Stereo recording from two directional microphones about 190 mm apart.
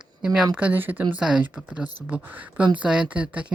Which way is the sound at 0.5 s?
10° right (ahead or behind).